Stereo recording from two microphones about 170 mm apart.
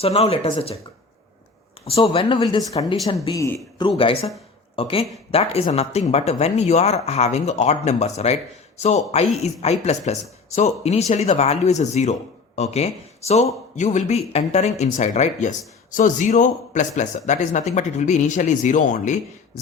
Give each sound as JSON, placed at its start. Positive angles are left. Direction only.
{"t": 0.0, "sound": "speech", "side_deg": 35}
{"t": 1.8, "sound": "speech", "side_deg": 35}
{"t": 3.8, "sound": "speech", "side_deg": 30}